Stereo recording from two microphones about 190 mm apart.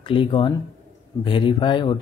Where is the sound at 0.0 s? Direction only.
25° left (ahead or behind).